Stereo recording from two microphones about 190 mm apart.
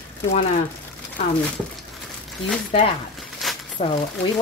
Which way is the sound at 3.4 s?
Centre (ahead or behind).